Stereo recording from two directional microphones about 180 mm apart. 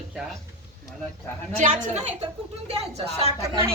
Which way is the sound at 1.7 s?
40° right (ahead or behind).